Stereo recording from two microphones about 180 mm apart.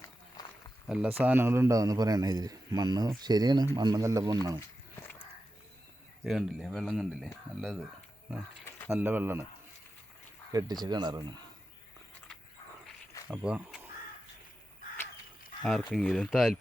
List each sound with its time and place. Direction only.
0.9 s a man's voice: 10° right (ahead or behind)
6.2 s speech: 5° right (ahead or behind)
8.9 s speech: 10° right (ahead or behind)
10.5 s a man's voice: 20° right (ahead or behind)
13.2 s speech: 5° right (ahead or behind)
15.9 s speech: 5° left (ahead or behind)